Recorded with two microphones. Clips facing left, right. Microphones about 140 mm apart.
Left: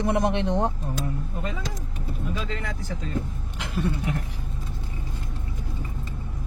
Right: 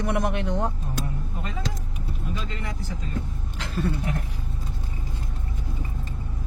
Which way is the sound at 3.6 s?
15° left (ahead or behind).